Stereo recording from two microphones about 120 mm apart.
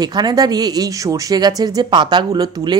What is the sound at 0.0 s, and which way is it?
Speech, 35° right (ahead or behind).